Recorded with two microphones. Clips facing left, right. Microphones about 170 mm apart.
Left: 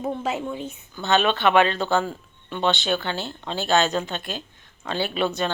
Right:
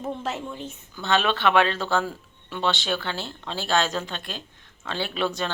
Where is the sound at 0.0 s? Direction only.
10° left (ahead or behind).